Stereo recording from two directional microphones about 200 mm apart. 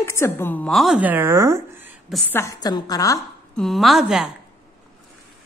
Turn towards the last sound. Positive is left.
turn(degrees=0)  # may be behind; listen again after turning